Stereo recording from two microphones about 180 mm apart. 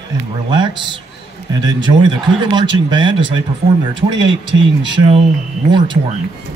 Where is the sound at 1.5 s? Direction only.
25° right (ahead or behind).